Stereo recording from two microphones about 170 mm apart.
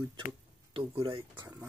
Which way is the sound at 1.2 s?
20° right (ahead or behind).